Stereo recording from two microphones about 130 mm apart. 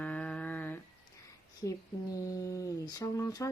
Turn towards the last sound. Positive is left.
turn(degrees=25)  # may be behind; listen again after turning